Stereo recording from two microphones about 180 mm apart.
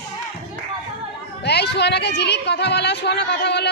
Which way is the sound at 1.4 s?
65° left (ahead or behind).